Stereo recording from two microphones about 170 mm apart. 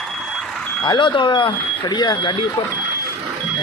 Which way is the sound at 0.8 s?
25° left (ahead or behind).